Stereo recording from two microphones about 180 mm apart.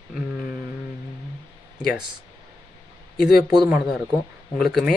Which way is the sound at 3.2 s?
55° left (ahead or behind).